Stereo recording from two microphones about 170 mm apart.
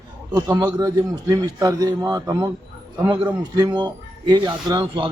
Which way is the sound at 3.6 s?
25° right (ahead or behind).